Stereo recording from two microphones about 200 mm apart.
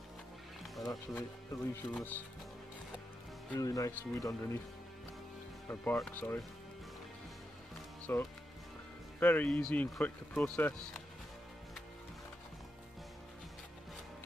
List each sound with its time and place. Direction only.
0.8 s speech: 15° left (ahead or behind)
3.5 s speech: 15° left (ahead or behind)
5.7 s speech: 5° left (ahead or behind)
8.1 s speech: 10° left (ahead or behind)